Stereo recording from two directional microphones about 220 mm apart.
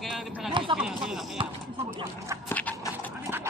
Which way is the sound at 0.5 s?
20° right (ahead or behind).